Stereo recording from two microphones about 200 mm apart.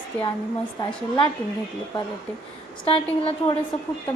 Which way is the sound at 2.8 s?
30° left (ahead or behind).